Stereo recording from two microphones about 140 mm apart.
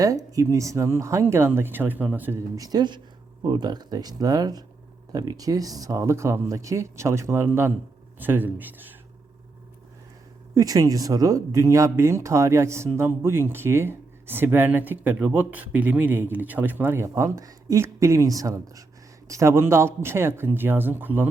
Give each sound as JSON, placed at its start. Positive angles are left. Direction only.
{"t": 0.0, "sound": "speech", "side_deg": -25}
{"t": 2.6, "sound": "speech", "side_deg": -30}
{"t": 10.5, "sound": "speech", "side_deg": -25}